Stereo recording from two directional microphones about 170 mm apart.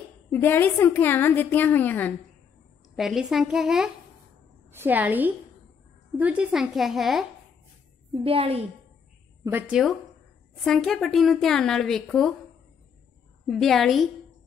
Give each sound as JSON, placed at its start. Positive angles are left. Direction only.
{"t": 0.3, "sound": "a woman's voice", "side_deg": 10}
{"t": 3.0, "sound": "a woman's voice", "side_deg": 0}
{"t": 8.1, "sound": "a woman's voice", "side_deg": -35}
{"t": 9.4, "sound": "a woman's voice", "side_deg": -10}
{"t": 13.5, "sound": "a woman's voice", "side_deg": 0}